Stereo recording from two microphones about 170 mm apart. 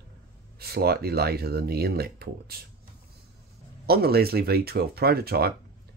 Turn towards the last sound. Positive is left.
turn(degrees=-65)  # may be behind; listen again after turning